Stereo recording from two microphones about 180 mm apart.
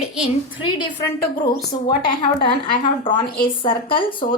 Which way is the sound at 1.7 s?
45° left (ahead or behind).